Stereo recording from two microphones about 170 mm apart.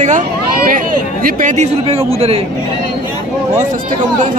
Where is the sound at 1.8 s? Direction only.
35° right (ahead or behind).